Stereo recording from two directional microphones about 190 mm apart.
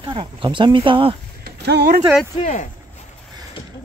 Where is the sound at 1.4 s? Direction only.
55° right (ahead or behind).